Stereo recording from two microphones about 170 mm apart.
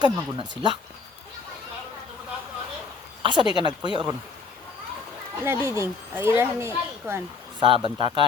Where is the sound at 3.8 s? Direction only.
25° right (ahead or behind).